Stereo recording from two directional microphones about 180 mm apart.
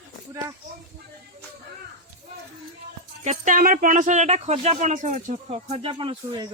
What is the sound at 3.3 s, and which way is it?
Speech, 45° right (ahead or behind).